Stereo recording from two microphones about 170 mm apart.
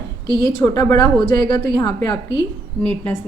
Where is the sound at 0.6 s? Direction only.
20° left (ahead or behind).